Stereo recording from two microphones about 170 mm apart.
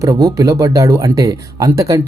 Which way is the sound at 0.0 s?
20° right (ahead or behind).